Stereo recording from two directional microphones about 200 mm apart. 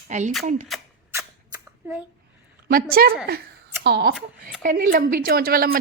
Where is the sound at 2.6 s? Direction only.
50° right (ahead or behind).